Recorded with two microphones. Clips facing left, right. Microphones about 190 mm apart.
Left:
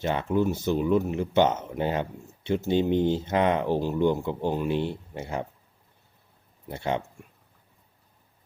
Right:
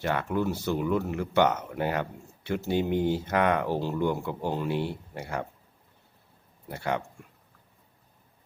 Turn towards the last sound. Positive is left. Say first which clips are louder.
# left 2 dB
turn(degrees=20)  # may be behind; listen again after turning